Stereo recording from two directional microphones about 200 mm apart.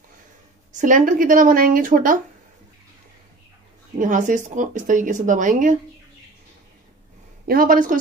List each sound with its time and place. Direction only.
0.7 s speech: 40° right (ahead or behind)
4.0 s speech: 40° right (ahead or behind)
7.4 s speech: 45° right (ahead or behind)